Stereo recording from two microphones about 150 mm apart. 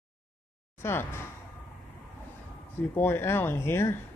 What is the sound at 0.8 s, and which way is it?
Speech, 15° left (ahead or behind).